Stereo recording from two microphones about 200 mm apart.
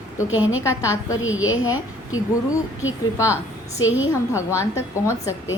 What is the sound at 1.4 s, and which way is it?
Speech, 90° left.